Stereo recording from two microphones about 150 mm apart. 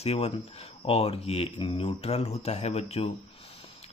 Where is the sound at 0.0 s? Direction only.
45° left (ahead or behind).